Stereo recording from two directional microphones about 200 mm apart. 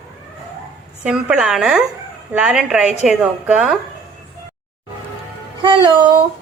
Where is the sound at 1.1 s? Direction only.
5° right (ahead or behind).